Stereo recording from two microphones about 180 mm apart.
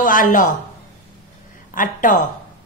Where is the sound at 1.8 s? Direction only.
45° left (ahead or behind).